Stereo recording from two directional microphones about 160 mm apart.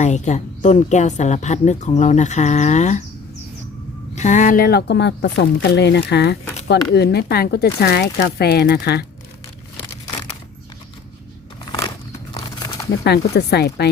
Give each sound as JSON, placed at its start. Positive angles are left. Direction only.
{"t": 0.0, "sound": "a woman's voice", "side_deg": 50}
{"t": 4.1, "sound": "speech", "side_deg": 50}
{"t": 12.3, "sound": "crumpling", "side_deg": 20}
{"t": 13.1, "sound": "speech", "side_deg": 90}